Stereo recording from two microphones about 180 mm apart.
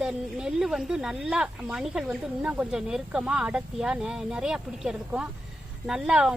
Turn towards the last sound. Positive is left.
turn(degrees=-5)  # may be behind; listen again after turning